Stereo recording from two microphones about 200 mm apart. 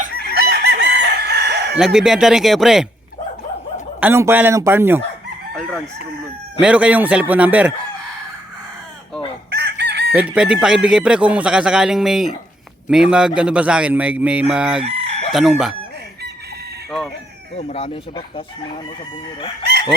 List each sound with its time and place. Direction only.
0.1 s chicken: 50° left (ahead or behind)
0.3 s chicken: 55° right (ahead or behind)
1.7 s speech: 5° right (ahead or behind)
4.0 s a man's voice: 10° right (ahead or behind)
5.5 s a man's voice: 5° left (ahead or behind)
9.5 s chicken: 55° right (ahead or behind)
10.1 s speech: 5° right (ahead or behind)
17.6 s speech: 30° left (ahead or behind)